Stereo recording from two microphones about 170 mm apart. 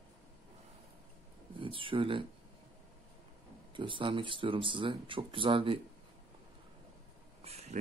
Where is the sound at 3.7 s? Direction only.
30° right (ahead or behind).